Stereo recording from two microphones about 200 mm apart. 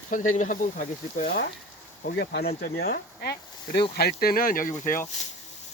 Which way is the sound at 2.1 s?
50° left (ahead or behind).